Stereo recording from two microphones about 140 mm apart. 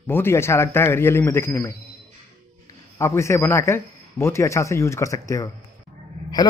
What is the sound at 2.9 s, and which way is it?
A man's voice, 20° left (ahead or behind).